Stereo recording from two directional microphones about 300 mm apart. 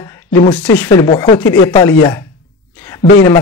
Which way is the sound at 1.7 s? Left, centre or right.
Centre.